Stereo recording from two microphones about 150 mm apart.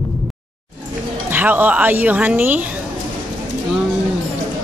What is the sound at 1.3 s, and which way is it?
Speech, 10° right (ahead or behind).